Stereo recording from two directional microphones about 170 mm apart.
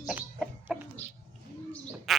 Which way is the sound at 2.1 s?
Centre (ahead or behind).